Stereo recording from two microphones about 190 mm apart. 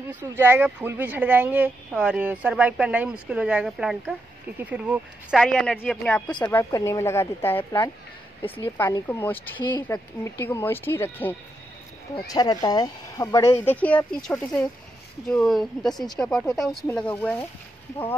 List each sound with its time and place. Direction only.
0.1 s speech: 10° right (ahead or behind)
5.4 s speech: 5° left (ahead or behind)
9.6 s speech: 25° left (ahead or behind)
9.8 s speech: 15° left (ahead or behind)
12.3 s speech: 20° left (ahead or behind)